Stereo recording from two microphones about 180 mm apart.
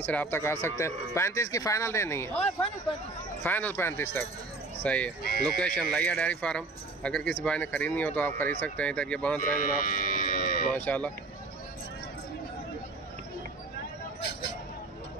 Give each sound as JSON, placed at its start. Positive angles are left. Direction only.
{"t": 0.0, "sound": "speech", "side_deg": 10}
{"t": 2.3, "sound": "speech", "side_deg": 35}
{"t": 3.4, "sound": "speech", "side_deg": 10}
{"t": 9.6, "sound": "cattle", "side_deg": 50}
{"t": 10.7, "sound": "speech", "side_deg": 5}